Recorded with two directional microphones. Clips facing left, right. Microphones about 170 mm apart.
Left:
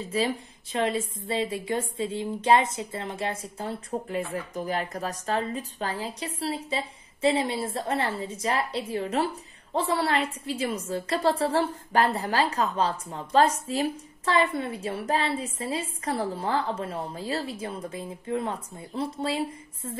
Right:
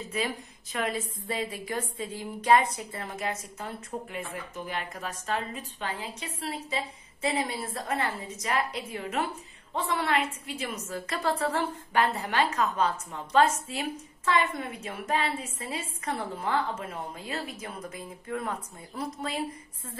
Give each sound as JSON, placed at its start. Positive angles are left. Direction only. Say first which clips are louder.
{"t": 0.1, "sound": "a woman's voice", "louder": "left 5 dB", "side_deg": 30}